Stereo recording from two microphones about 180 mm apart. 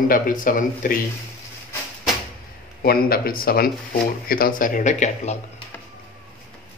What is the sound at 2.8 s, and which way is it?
Speech, 55° left (ahead or behind).